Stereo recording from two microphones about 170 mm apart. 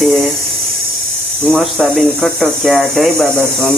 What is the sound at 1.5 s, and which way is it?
Speech, centre (ahead or behind).